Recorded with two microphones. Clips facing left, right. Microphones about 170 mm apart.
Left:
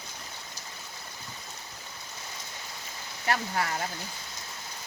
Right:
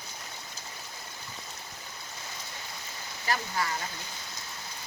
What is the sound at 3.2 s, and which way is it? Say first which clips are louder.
Speech: left 2 dB; 65° left (ahead or behind).